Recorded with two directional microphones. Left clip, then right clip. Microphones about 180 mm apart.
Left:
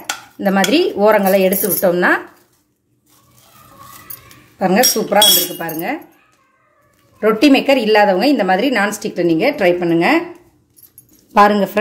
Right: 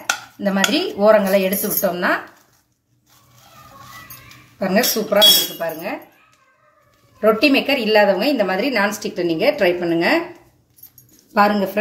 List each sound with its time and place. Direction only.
0.7 s a woman's voice: 45° left (ahead or behind)
4.6 s a woman's voice: 50° left (ahead or behind)
7.2 s a woman's voice: 50° left (ahead or behind)
11.3 s a woman's voice: 55° left (ahead or behind)